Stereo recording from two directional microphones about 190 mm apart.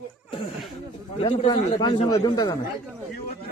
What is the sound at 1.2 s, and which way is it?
A man's voice, 30° left (ahead or behind).